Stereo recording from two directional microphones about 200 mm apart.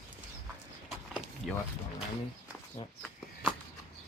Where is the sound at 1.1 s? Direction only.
5° right (ahead or behind).